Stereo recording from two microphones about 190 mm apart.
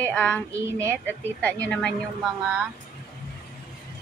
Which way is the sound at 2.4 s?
5° right (ahead or behind).